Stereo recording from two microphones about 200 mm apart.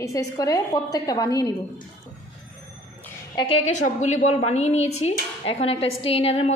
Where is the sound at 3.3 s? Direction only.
30° left (ahead or behind).